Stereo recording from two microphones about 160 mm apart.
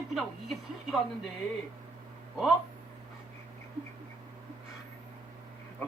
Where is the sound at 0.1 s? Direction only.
Centre (ahead or behind).